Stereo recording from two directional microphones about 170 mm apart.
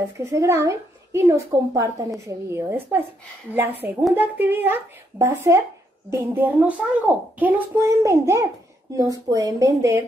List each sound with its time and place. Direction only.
0.2 s a woman's voice: 15° right (ahead or behind)